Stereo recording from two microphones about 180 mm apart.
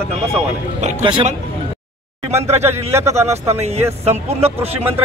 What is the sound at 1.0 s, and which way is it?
Speech, 25° right (ahead or behind).